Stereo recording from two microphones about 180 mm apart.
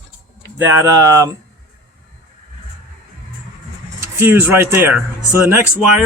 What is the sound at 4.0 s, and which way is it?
Speech, 15° right (ahead or behind).